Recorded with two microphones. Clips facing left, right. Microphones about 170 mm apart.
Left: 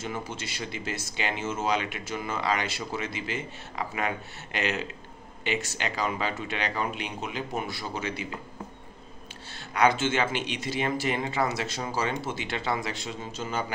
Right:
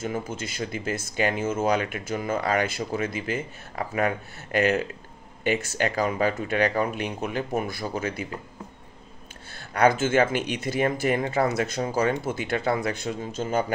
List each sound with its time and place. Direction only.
0.0 s speech: 50° right (ahead or behind)
9.8 s speech: 50° right (ahead or behind)